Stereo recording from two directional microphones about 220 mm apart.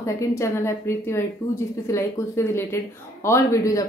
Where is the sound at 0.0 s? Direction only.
15° left (ahead or behind).